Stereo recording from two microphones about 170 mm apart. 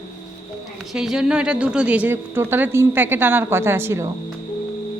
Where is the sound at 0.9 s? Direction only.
5° right (ahead or behind).